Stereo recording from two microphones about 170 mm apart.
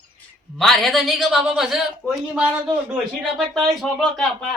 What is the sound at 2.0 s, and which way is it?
Speech, 10° left (ahead or behind).